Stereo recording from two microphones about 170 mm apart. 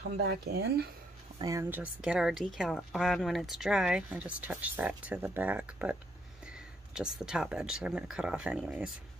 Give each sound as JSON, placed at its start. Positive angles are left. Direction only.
{"t": 0.2, "sound": "speech", "side_deg": -70}
{"t": 1.4, "sound": "speech", "side_deg": -15}